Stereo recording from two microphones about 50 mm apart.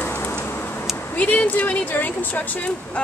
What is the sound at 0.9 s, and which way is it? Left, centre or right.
Speech, left.